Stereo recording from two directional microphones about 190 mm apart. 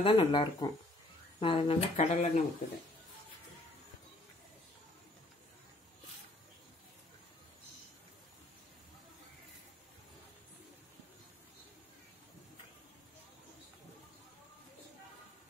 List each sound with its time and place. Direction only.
0.0 s speech: 25° left (ahead or behind)